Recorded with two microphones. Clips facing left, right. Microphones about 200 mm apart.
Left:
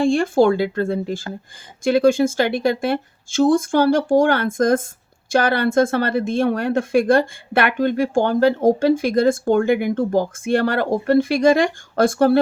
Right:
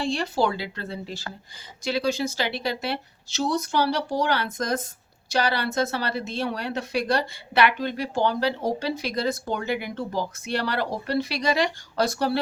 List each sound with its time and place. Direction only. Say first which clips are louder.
0.0 s a woman's voice: left 9 dB; 50° left (ahead or behind)